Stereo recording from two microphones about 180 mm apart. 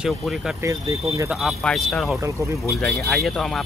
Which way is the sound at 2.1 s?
15° right (ahead or behind).